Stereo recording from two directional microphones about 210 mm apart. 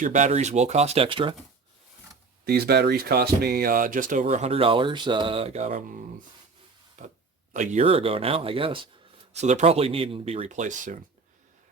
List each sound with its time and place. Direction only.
0.0 s speech: 35° right (ahead or behind)
2.4 s speech: 50° right (ahead or behind)